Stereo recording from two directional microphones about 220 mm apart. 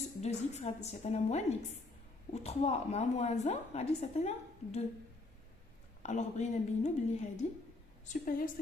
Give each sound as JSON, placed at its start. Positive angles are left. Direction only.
{"t": 0.2, "sound": "speech", "side_deg": 30}
{"t": 6.0, "sound": "speech", "side_deg": 30}